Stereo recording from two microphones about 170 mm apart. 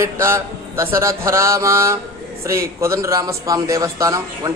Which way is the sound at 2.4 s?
15° right (ahead or behind).